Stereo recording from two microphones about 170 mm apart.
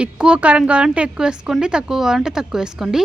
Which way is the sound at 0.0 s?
5° right (ahead or behind).